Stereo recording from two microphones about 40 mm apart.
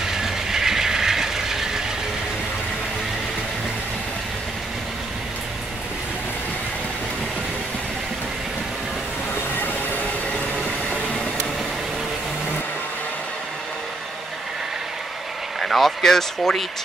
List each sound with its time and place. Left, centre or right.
0.0 s train: centre
9.3 s train: left
10.3 s train: left
15.6 s a sound: centre